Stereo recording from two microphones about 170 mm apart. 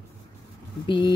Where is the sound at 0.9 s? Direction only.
30° left (ahead or behind).